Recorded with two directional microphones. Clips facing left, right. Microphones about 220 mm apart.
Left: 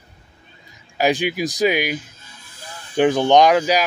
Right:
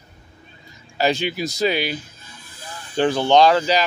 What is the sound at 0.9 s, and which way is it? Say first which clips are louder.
Speech: left 2 dB; 15° left (ahead or behind).